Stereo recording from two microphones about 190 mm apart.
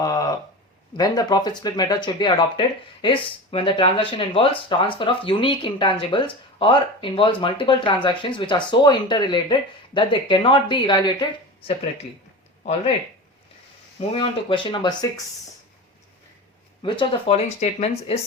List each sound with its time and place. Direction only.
0.0 s a sound: 20° left (ahead or behind)
0.9 s speech: 20° left (ahead or behind)
14.1 s speech: 25° left (ahead or behind)
16.8 s speech: 25° left (ahead or behind)